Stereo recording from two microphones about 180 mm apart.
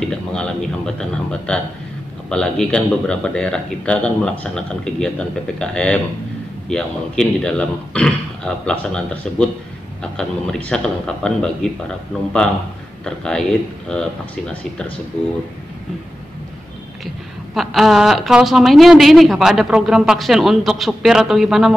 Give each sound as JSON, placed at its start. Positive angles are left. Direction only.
{"t": 0.0, "sound": "a woman's voice", "side_deg": 5}
{"t": 13.0, "sound": "a woman's voice", "side_deg": 5}
{"t": 17.6, "sound": "a woman's voice", "side_deg": 0}